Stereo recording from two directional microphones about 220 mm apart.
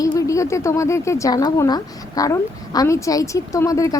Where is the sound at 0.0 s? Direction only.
15° left (ahead or behind).